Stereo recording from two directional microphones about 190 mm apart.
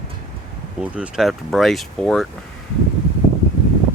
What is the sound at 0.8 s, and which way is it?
Speech, 5° right (ahead or behind).